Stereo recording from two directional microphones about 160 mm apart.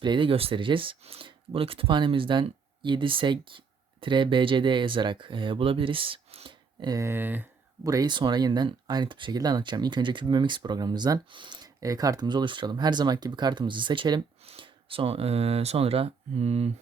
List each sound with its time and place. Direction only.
0.0 s speech: 30° right (ahead or behind); by 7.4 s 10° right (ahead or behind)
7.9 s speech: 25° right (ahead or behind); by 16.7 s 40° right (ahead or behind)